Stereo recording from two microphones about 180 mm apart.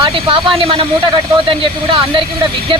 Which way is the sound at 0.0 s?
30° right (ahead or behind).